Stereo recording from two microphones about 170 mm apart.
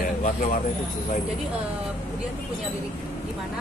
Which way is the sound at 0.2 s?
50° left (ahead or behind).